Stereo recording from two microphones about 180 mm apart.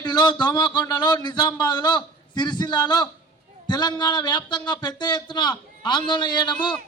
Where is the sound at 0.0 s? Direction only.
25° left (ahead or behind).